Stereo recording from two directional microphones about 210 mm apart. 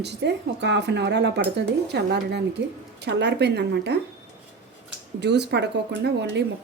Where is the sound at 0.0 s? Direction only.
55° right (ahead or behind).